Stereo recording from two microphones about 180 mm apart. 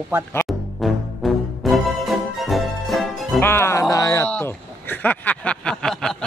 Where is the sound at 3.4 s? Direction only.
15° left (ahead or behind).